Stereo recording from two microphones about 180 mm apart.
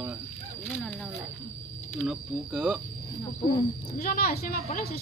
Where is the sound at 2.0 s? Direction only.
Centre (ahead or behind).